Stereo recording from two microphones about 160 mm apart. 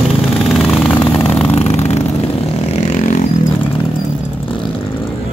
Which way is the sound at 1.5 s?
45° left (ahead or behind).